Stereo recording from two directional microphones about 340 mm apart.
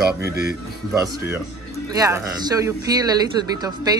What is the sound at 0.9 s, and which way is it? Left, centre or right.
Speech, centre.